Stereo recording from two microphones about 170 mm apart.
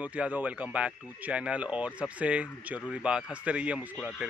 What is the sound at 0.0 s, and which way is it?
Speech, 10° right (ahead or behind).